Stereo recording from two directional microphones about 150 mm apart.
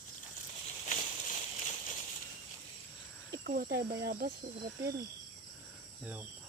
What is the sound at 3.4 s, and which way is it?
Speech, 75° right (ahead or behind).